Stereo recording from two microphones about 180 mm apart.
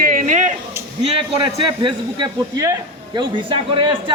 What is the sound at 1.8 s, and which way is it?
A man's voice, 20° right (ahead or behind).